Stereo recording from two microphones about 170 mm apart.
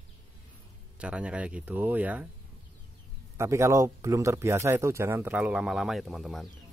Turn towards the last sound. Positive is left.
turn(degrees=0)  # may be behind; listen again after turning